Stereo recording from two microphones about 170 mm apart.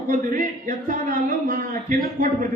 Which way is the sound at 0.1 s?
50° right (ahead or behind).